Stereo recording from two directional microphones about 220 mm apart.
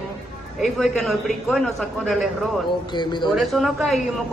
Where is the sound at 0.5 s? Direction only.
Centre (ahead or behind).